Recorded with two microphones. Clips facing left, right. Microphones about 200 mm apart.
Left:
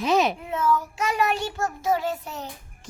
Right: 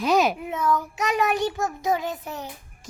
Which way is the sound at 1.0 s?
20° right (ahead or behind).